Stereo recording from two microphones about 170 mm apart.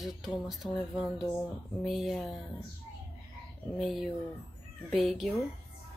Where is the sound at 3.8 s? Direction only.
Centre (ahead or behind).